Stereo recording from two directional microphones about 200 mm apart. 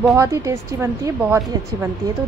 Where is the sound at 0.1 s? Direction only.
15° right (ahead or behind).